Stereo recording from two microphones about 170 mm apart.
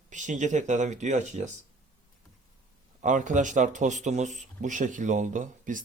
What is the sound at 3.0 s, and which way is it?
Speech, 45° right (ahead or behind).